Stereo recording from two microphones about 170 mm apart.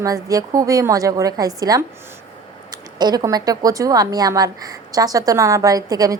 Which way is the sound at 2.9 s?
25° right (ahead or behind).